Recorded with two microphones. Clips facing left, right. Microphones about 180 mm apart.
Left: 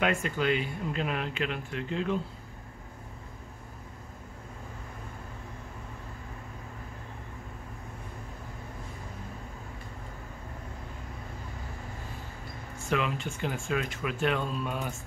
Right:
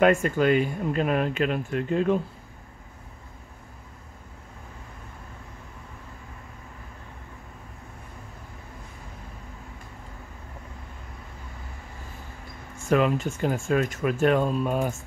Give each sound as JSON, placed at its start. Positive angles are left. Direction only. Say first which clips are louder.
{"t": 0.0, "sound": "speech", "louder": "right 8 dB", "side_deg": -45}
{"t": 12.9, "sound": "speech", "louder": "right 8 dB", "side_deg": -45}